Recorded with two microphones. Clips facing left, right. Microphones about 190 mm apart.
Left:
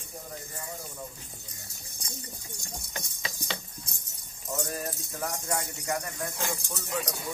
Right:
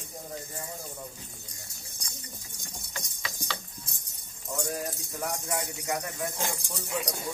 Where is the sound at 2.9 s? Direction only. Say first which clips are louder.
Even; 20° left (ahead or behind).